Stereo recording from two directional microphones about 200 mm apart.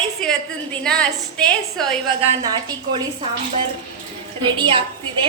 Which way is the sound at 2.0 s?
20° right (ahead or behind).